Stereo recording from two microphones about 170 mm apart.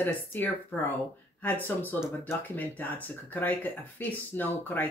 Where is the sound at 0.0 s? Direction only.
10° left (ahead or behind).